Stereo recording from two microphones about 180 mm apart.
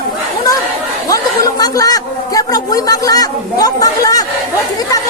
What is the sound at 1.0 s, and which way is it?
A woman's voice, 20° left (ahead or behind).